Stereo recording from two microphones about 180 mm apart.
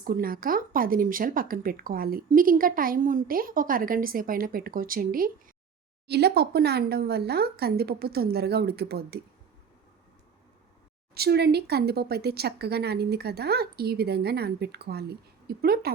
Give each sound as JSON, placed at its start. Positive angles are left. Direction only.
{"t": 0.0, "sound": "a woman's voice", "side_deg": -55}
{"t": 6.1, "sound": "speech", "side_deg": -65}
{"t": 11.1, "sound": "speech", "side_deg": -60}